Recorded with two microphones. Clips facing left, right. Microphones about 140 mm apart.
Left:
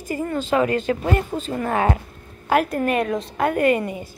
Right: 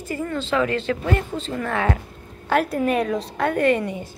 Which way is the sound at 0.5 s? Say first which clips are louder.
Left 2 dB; 45° left (ahead or behind).